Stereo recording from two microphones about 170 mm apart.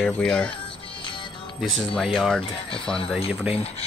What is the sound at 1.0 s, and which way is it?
Music, 30° left (ahead or behind).